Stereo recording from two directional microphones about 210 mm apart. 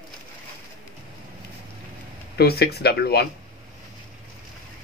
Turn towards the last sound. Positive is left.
turn(degrees=50)  # may be behind; listen again after turning